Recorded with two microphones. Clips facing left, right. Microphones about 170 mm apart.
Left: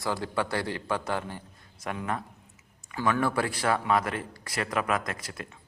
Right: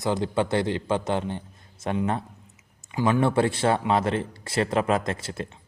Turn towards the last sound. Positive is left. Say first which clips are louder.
# right 7 dB
turn(degrees=-25)  # may be behind; listen again after turning